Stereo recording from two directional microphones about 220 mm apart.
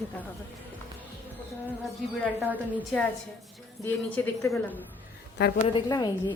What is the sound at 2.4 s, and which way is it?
Speech, 5° right (ahead or behind).